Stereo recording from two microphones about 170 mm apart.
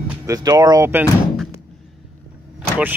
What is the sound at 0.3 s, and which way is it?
Speech, 20° right (ahead or behind).